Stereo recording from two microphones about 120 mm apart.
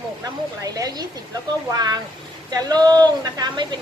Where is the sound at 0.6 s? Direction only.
30° right (ahead or behind).